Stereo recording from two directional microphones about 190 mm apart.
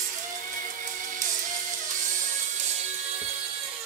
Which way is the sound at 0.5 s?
40° right (ahead or behind).